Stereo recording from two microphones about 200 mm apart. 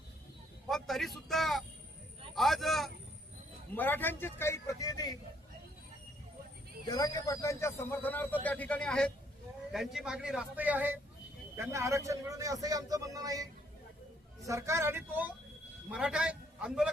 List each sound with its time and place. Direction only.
0.7 s a man's voice: centre (ahead or behind); by 5.1 s 20° left (ahead or behind)
6.8 s a man's voice: 20° left (ahead or behind); by 16.9 s 5° right (ahead or behind)